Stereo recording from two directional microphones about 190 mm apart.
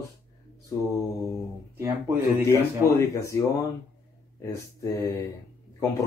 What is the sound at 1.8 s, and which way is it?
Speech, 15° right (ahead or behind).